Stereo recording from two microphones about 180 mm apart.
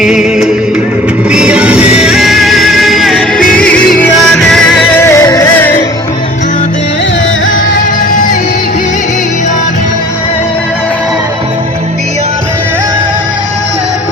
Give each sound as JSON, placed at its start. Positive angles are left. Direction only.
{"t": 0.0, "sound": "music", "side_deg": -5}
{"t": 8.1, "sound": "music", "side_deg": 50}